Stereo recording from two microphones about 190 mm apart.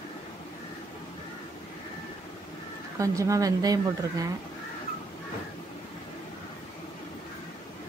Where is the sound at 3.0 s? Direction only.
15° right (ahead or behind).